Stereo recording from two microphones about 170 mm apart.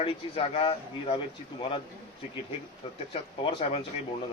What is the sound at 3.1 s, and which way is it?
Speech, 30° left (ahead or behind).